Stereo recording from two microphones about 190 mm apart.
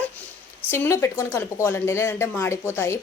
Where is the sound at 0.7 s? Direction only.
15° left (ahead or behind).